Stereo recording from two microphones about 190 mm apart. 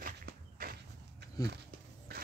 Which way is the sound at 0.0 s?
50° right (ahead or behind).